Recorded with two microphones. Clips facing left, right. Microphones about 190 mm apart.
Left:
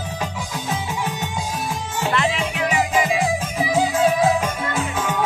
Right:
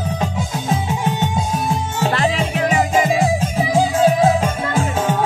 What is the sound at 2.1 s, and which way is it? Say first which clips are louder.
Music: right 2 dB; 35° right (ahead or behind).